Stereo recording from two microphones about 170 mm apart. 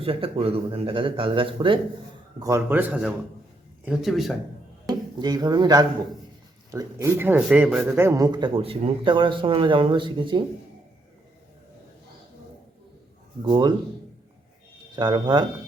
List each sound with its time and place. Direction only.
0.0 s speech: 35° right (ahead or behind)
2.4 s speech: 15° right (ahead or behind); by 4.4 s centre (ahead or behind)
4.9 s a man's voice: 25° right (ahead or behind)
13.4 s a man's voice: 25° right (ahead or behind)
14.9 s a man's voice: 25° right (ahead or behind)